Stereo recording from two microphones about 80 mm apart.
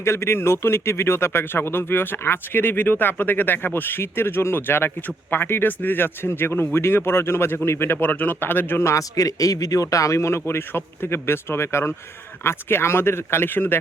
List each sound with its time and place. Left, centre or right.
0.0 s speech: left